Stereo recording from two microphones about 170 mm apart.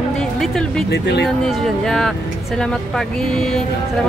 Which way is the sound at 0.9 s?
80° left.